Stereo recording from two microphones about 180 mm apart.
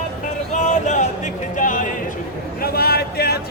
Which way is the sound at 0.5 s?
40° left (ahead or behind).